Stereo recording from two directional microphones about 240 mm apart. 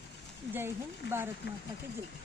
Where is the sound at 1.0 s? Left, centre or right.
Left.